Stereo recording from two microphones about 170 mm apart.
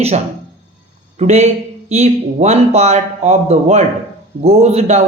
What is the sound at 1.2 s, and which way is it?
Speech, 40° right (ahead or behind).